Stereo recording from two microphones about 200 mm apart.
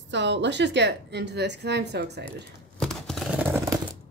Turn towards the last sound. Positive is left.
turn(degrees=-10)  # may be behind; listen again after turning